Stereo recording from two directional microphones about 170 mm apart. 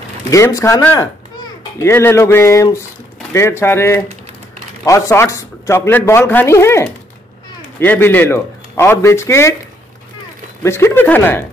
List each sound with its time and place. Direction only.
0.3 s a child's voice: 20° left (ahead or behind)
10.6 s a man's voice: 15° left (ahead or behind)